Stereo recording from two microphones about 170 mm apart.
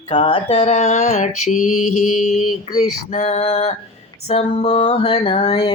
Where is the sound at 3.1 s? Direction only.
40° left (ahead or behind).